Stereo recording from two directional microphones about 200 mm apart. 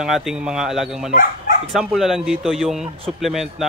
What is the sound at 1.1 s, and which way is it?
Speech, 45° left (ahead or behind).